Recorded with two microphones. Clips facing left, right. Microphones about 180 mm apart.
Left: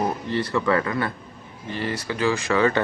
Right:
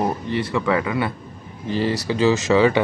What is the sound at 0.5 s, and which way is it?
Speech, 10° right (ahead or behind).